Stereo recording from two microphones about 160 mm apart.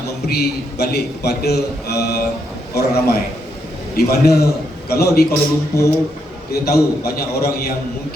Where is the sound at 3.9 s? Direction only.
80° left.